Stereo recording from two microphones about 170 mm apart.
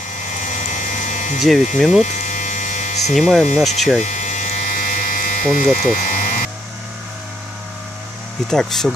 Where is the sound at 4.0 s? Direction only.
45° left (ahead or behind).